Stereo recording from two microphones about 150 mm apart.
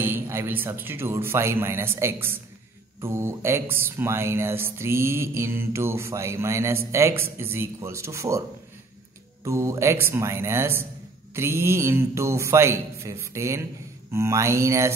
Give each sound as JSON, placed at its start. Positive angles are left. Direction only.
{"t": 0.0, "sound": "speech", "side_deg": -15}